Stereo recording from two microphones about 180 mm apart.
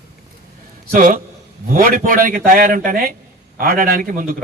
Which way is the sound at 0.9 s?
45° right (ahead or behind).